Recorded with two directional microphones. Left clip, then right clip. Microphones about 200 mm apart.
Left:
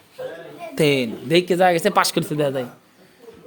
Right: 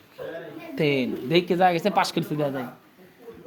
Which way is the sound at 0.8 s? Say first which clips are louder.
Left 5 dB; 40° left (ahead or behind).